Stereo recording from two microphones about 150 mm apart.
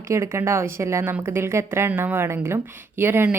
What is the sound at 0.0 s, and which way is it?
A woman's voice, 20° right (ahead or behind).